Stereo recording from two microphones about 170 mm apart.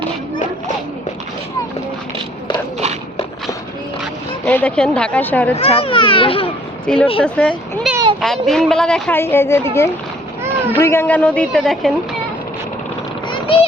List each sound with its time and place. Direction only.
4.4 s a woman's voice: 5° left (ahead or behind)
5.5 s a child's voice: 35° left (ahead or behind)
6.8 s a woman's voice: 5° left (ahead or behind)
7.9 s a sound: 5° right (ahead or behind)
8.2 s a woman's voice: centre (ahead or behind)
13.2 s a sound: 30° left (ahead or behind)